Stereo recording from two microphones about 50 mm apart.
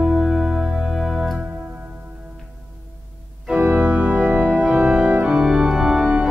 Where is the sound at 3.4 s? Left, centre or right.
Right.